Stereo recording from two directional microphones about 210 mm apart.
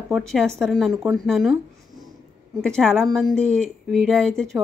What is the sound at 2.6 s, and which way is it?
A woman's voice, 5° left (ahead or behind).